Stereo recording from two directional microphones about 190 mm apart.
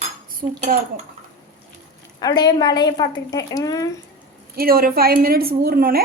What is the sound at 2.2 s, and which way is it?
A woman's voice, 20° left (ahead or behind).